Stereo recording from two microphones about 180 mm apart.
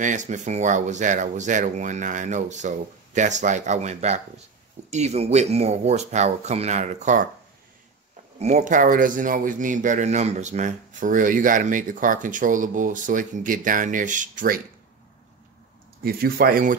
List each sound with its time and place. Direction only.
0.0 s speech: 45° right (ahead or behind)
8.4 s speech: 40° right (ahead or behind)
16.0 s speech: 55° right (ahead or behind)